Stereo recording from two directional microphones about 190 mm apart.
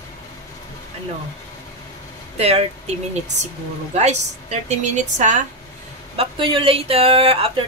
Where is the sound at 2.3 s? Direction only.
35° right (ahead or behind).